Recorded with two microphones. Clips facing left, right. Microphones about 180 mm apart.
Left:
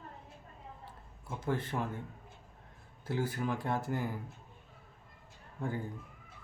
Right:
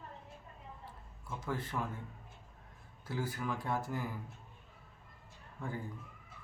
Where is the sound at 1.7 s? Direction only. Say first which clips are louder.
Left 3 dB; 30° left (ahead or behind).